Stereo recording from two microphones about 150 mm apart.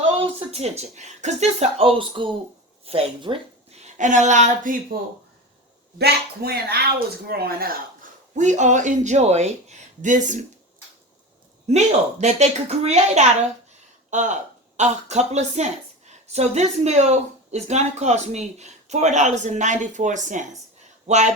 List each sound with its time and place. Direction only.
0.2 s a woman's voice: 45° right (ahead or behind)
3.8 s a sound: 55° right (ahead or behind)
6.0 s speech: 90° right
8.4 s a woman's voice: 55° right (ahead or behind)
11.7 s a woman's voice: 50° right (ahead or behind)